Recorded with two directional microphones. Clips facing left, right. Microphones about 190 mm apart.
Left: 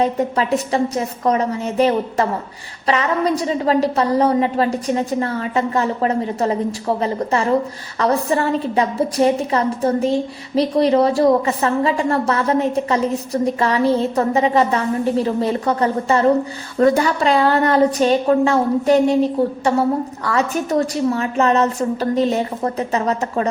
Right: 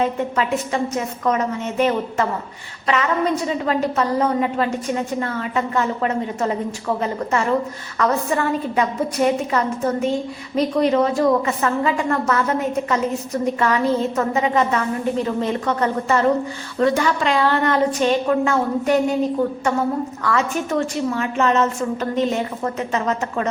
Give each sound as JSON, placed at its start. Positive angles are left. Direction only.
{"t": 0.0, "sound": "a woman's voice", "side_deg": 40}